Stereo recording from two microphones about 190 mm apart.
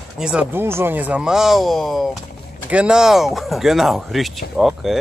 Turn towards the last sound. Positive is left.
turn(degrees=0)  # may be behind; listen again after turning